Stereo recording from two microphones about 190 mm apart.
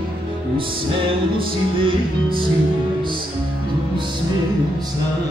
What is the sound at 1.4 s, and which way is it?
Music, 30° right (ahead or behind).